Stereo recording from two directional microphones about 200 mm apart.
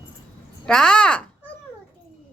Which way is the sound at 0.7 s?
5° left (ahead or behind).